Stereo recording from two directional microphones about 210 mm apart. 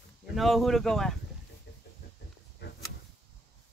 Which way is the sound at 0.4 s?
Centre (ahead or behind).